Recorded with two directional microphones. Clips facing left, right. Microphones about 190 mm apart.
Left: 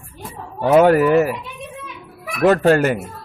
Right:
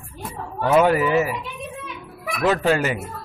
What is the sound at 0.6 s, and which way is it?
Speech, 45° left (ahead or behind).